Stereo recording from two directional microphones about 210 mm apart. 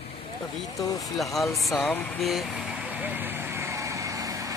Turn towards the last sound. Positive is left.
turn(degrees=-15)  # may be behind; listen again after turning